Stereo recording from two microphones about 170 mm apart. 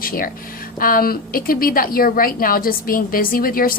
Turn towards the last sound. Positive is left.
turn(degrees=60)  # may be behind; listen again after turning